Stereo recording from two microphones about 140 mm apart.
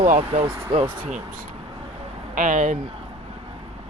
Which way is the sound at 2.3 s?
65° right (ahead or behind).